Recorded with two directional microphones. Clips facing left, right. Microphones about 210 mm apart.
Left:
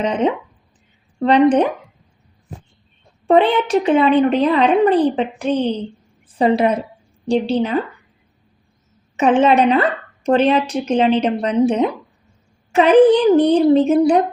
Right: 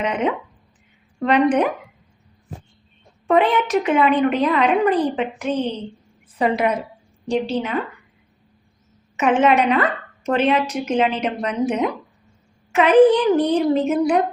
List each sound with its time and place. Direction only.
0.0 s a woman's voice: 30° left (ahead or behind)
3.2 s a woman's voice: 30° left (ahead or behind)
9.1 s a woman's voice: 30° left (ahead or behind)